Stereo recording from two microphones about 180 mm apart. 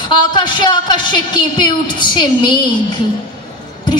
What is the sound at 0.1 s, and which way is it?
A woman's voice, 25° left (ahead or behind).